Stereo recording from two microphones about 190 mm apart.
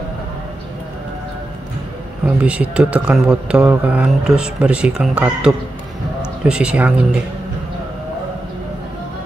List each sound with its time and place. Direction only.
2.2 s speech: 5° right (ahead or behind)